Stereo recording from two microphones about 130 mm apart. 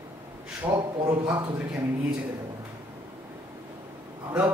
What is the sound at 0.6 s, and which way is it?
Speech, 20° right (ahead or behind).